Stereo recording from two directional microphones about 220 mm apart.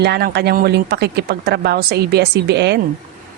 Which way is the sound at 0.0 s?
50° right (ahead or behind).